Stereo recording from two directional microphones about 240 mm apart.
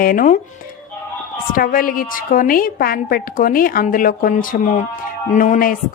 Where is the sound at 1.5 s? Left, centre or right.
Left.